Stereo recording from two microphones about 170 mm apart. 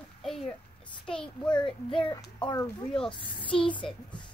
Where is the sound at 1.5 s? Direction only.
30° left (ahead or behind).